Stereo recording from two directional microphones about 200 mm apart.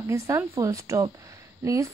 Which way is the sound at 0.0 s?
15° right (ahead or behind).